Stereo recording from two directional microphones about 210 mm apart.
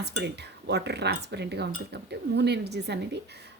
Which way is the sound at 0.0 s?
55° right (ahead or behind).